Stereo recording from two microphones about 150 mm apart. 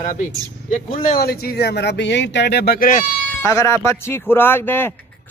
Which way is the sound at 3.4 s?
20° left (ahead or behind).